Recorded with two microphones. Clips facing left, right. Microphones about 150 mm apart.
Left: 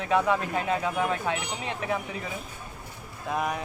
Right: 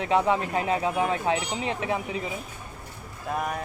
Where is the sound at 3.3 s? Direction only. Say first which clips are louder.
Left 1 dB; centre (ahead or behind).